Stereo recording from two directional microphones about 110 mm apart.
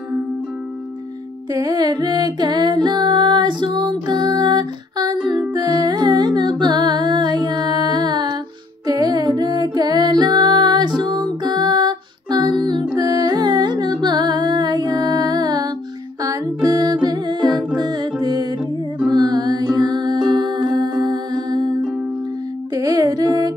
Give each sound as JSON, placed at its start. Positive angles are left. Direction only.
{"t": 1.5, "sound": "music", "side_deg": -30}
{"t": 22.8, "sound": "music", "side_deg": -35}